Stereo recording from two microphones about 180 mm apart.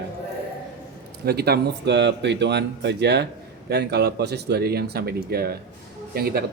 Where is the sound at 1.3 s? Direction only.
65° right (ahead or behind).